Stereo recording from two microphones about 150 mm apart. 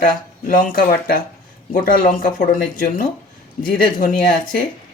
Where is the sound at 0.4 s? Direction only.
65° left (ahead or behind).